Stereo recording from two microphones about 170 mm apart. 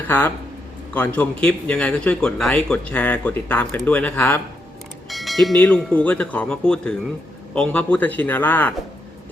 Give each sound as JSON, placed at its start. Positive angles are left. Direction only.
{"t": 0.1, "sound": "speech", "side_deg": 10}